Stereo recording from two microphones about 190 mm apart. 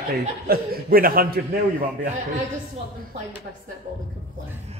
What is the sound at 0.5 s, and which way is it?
Speech, 50° right (ahead or behind).